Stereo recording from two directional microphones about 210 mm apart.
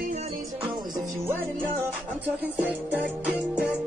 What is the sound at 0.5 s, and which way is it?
Music, 20° right (ahead or behind).